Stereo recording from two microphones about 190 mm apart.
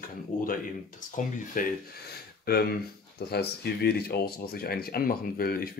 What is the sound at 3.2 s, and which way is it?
Speech, 55° left (ahead or behind).